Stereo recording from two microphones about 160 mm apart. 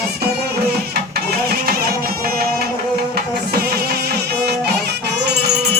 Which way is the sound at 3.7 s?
90° right.